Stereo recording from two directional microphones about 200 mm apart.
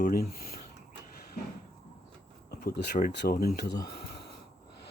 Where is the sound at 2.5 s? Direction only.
50° left (ahead or behind).